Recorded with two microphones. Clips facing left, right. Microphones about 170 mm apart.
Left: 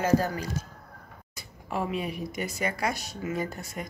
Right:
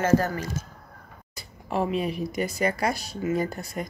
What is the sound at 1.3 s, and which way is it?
Speech, 35° right (ahead or behind).